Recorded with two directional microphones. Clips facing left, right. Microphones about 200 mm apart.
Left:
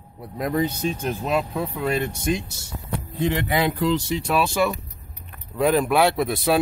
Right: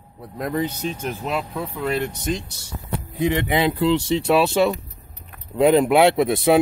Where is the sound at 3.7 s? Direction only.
25° right (ahead or behind).